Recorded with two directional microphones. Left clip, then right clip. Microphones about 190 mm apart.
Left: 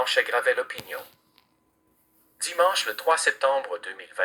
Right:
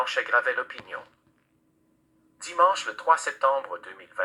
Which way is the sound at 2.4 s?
45° left (ahead or behind).